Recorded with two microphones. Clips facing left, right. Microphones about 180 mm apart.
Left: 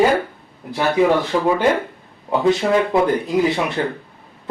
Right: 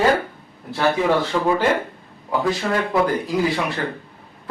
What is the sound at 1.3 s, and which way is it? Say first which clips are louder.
Speech: left 2 dB; 15° left (ahead or behind).